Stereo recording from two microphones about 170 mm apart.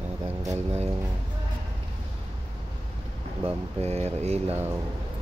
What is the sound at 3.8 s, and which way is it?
Speech, 40° right (ahead or behind).